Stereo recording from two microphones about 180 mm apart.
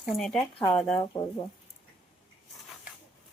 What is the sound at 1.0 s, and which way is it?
Speech, 20° left (ahead or behind).